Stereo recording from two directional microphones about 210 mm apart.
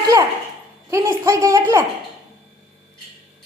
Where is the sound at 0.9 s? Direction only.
15° right (ahead or behind).